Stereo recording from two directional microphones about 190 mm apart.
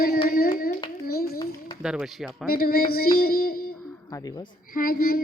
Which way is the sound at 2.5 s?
50° left (ahead or behind).